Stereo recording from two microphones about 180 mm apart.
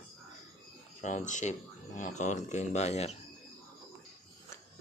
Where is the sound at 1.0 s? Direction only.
40° left (ahead or behind).